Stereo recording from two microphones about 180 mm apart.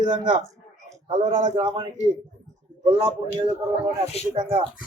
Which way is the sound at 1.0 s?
40° right (ahead or behind).